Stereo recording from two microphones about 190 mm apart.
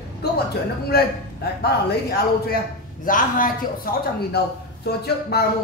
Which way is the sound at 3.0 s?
45° left (ahead or behind).